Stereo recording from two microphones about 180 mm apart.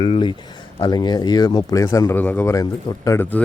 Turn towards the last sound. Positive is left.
turn(degrees=15)  # may be behind; listen again after turning